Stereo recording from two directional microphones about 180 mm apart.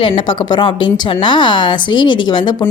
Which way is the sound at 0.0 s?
30° left (ahead or behind).